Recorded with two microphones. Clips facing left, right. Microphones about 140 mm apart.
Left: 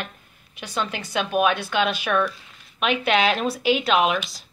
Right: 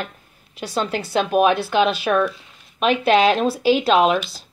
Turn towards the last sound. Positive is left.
turn(degrees=-35)  # may be behind; listen again after turning